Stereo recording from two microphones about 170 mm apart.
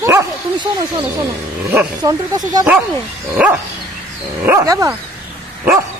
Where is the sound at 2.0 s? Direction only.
20° right (ahead or behind).